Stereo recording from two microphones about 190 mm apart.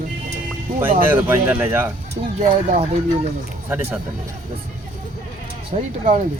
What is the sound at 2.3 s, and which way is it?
Speech, 35° right (ahead or behind).